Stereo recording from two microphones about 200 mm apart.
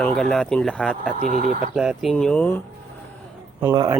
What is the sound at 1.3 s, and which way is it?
Speech, 40° right (ahead or behind).